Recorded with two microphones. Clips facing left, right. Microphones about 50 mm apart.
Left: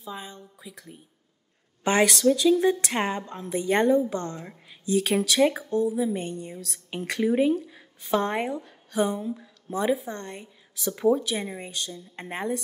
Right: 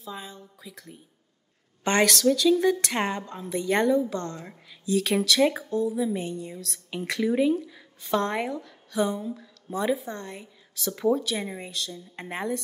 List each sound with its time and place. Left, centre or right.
0.0 s a woman's voice: centre
4.1 s a woman's voice: centre
4.8 s a woman's voice: centre